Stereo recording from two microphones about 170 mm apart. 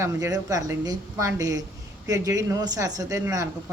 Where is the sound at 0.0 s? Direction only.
20° right (ahead or behind).